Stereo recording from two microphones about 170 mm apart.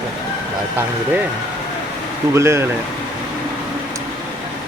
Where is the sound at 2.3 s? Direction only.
15° right (ahead or behind).